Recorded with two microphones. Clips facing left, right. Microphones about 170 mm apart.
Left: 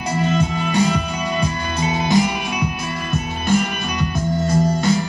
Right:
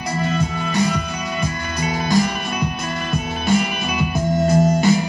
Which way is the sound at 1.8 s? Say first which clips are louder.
Left 1 dB; 20° left (ahead or behind).